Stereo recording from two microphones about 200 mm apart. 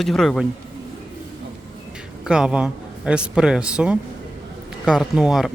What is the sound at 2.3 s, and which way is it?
Speech, 5° right (ahead or behind).